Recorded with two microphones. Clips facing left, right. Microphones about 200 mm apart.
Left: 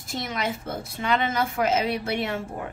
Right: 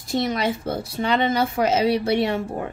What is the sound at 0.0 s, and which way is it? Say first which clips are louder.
A woman's voice: right 7 dB; 35° right (ahead or behind).